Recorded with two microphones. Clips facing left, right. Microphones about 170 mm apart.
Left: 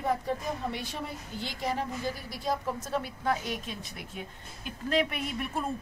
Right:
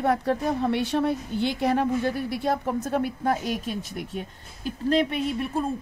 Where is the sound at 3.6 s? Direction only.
Centre (ahead or behind).